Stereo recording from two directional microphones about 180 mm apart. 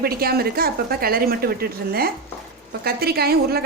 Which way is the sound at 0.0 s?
60° right (ahead or behind).